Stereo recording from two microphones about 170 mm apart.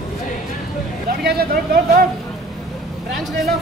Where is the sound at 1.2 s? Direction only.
60° right (ahead or behind).